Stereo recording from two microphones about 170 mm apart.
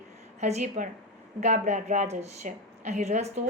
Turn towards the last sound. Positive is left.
turn(degrees=-40)  # may be behind; listen again after turning